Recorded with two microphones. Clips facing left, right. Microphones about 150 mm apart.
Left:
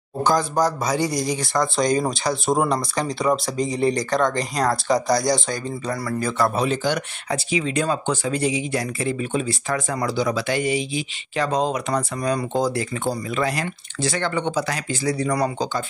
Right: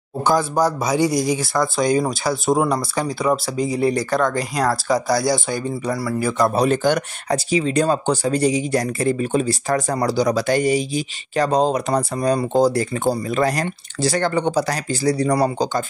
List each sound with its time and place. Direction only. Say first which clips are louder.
0.2 s speech: right 2 dB; 10° right (ahead or behind)
6.7 s speech: right 5 dB; 50° right (ahead or behind); by 15.8 s 35° right (ahead or behind)